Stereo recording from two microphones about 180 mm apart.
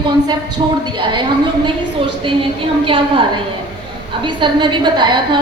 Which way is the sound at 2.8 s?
30° right (ahead or behind).